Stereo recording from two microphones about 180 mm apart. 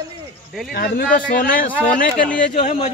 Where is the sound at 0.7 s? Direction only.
55° left (ahead or behind).